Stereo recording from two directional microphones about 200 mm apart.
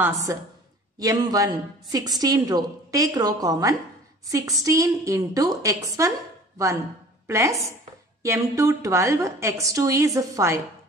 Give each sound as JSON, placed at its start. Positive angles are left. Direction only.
{"t": 0.0, "sound": "a woman's voice", "side_deg": -15}
{"t": 7.2, "sound": "a woman's voice", "side_deg": -15}